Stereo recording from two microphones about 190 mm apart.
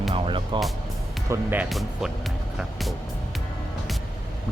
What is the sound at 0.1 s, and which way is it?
Music, 25° right (ahead or behind).